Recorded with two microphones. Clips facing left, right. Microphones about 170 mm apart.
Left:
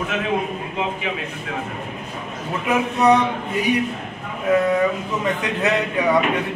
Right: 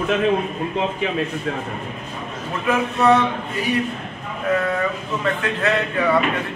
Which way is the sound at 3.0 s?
15° left (ahead or behind).